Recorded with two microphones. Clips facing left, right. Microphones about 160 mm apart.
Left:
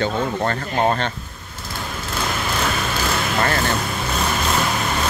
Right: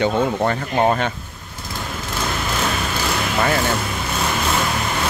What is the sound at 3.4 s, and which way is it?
Speech, 10° right (ahead or behind).